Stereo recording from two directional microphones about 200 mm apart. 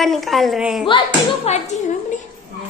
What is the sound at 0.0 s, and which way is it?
Speech, centre (ahead or behind).